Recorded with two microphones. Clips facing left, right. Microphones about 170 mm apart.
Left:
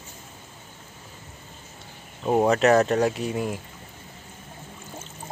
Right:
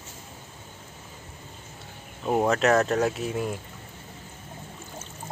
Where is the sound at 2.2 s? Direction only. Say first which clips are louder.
Left 3 dB; 5° left (ahead or behind).